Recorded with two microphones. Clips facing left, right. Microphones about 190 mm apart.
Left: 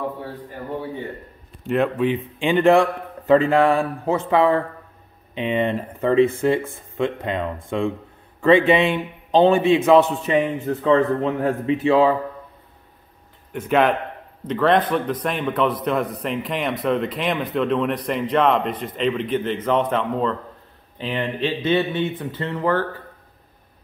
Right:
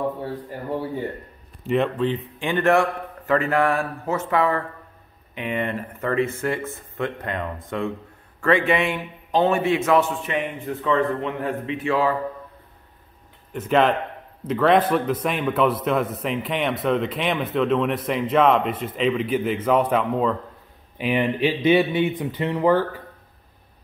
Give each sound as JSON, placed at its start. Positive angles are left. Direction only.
{"t": 1.6, "sound": "speech", "side_deg": 0}
{"t": 2.4, "sound": "a man's voice", "side_deg": 20}
{"t": 13.5, "sound": "speech", "side_deg": 5}